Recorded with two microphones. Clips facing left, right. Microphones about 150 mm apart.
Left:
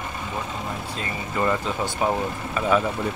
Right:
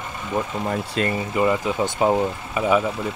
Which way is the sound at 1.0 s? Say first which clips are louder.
Right 13 dB; 90° right.